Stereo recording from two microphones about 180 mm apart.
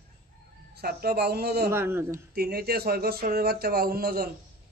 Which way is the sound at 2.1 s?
55° right (ahead or behind).